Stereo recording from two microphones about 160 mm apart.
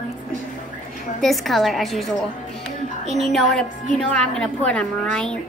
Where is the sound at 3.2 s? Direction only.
Centre (ahead or behind).